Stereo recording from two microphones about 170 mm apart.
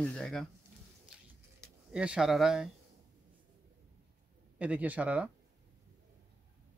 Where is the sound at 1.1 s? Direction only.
5° right (ahead or behind).